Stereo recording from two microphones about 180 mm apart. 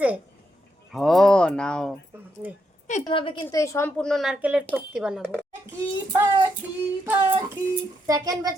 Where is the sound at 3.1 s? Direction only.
30° left (ahead or behind).